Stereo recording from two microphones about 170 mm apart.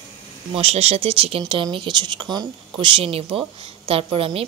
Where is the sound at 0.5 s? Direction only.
35° right (ahead or behind).